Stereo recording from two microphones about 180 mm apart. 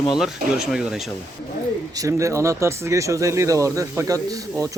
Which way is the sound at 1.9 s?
15° right (ahead or behind).